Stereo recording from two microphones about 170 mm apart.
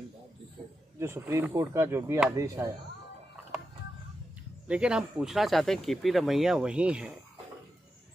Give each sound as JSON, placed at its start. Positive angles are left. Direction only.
{"t": 0.9, "sound": "speech", "side_deg": -15}
{"t": 4.6, "sound": "speech", "side_deg": -5}